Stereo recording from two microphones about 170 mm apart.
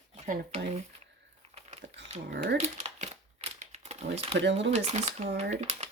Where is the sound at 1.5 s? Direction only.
40° right (ahead or behind).